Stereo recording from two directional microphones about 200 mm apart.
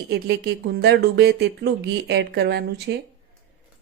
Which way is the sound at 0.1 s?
55° right (ahead or behind).